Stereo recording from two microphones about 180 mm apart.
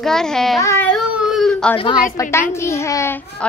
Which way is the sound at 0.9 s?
Centre (ahead or behind).